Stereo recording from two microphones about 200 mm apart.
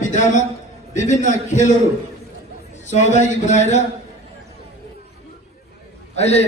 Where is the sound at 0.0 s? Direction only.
40° left (ahead or behind).